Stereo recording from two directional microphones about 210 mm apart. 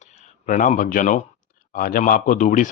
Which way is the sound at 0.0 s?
35° left (ahead or behind).